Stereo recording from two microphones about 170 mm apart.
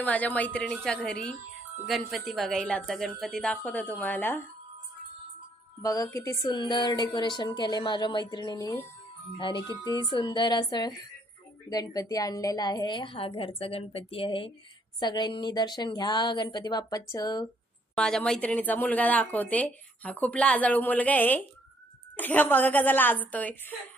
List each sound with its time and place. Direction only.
0.0 s a woman's voice: 10° left (ahead or behind)
5.8 s a woman's voice: 20° left (ahead or behind)
17.9 s speech: 5° left (ahead or behind)